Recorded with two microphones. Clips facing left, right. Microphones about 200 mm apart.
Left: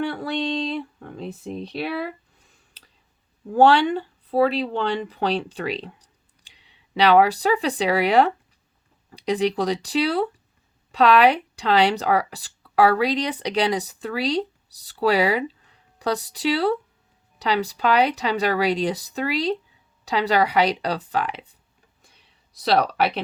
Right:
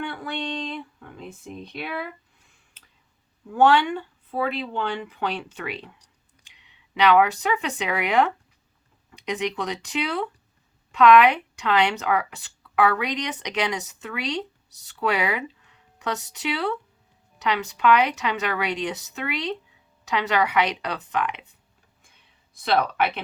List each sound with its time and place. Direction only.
0.0 s speech: 35° left (ahead or behind)
22.5 s speech: 35° left (ahead or behind)